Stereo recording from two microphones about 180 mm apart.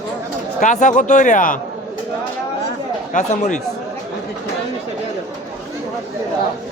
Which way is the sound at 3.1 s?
45° left (ahead or behind).